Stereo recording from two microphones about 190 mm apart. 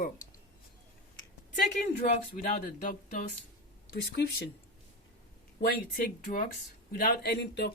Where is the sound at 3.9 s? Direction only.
60° left (ahead or behind).